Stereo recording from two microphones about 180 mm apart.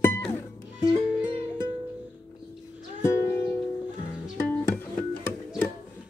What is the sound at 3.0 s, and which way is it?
Music, 15° left (ahead or behind).